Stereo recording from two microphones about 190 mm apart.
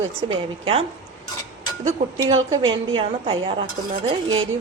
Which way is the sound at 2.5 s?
25° right (ahead or behind).